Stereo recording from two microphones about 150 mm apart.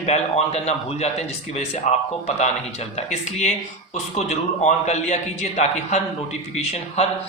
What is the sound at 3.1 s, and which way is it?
Speech, 50° left (ahead or behind).